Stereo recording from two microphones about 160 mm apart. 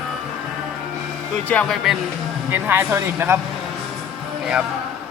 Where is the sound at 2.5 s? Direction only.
15° right (ahead or behind).